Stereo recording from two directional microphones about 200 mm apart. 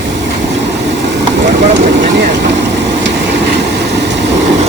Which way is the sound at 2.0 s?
60° right (ahead or behind).